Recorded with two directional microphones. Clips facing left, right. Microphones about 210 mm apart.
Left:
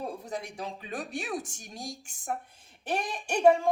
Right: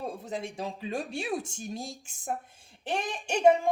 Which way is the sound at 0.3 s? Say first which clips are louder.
Right 2 dB; 25° right (ahead or behind).